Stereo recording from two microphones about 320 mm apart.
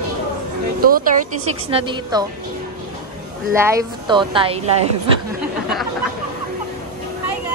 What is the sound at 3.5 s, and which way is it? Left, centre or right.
A woman's voice, centre.